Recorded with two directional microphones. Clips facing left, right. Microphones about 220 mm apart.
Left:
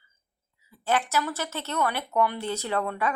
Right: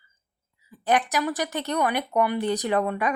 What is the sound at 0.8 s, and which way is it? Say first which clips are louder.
Speech: right 3 dB; 15° right (ahead or behind).